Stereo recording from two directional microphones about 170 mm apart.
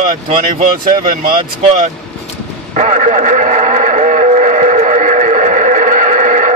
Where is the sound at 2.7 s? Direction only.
45° right (ahead or behind).